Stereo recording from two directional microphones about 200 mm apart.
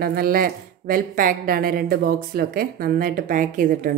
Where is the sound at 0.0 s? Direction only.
50° right (ahead or behind).